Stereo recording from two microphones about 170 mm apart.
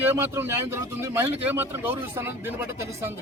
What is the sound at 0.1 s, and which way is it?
A man's voice, 15° right (ahead or behind).